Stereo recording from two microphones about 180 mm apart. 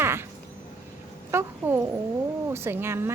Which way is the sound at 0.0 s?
15° right (ahead or behind).